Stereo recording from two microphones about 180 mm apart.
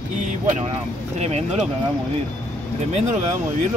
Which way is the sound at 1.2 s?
35° right (ahead or behind).